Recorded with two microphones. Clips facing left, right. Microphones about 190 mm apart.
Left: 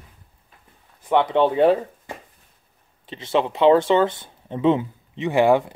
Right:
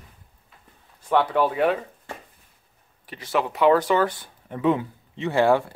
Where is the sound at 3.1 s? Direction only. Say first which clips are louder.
Left 3 dB; 25° left (ahead or behind).